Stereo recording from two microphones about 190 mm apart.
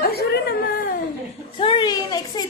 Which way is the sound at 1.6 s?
25° left (ahead or behind).